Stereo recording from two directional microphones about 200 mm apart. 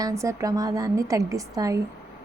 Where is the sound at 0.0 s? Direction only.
15° right (ahead or behind).